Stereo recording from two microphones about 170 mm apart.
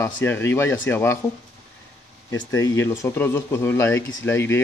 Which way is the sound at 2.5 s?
15° left (ahead or behind).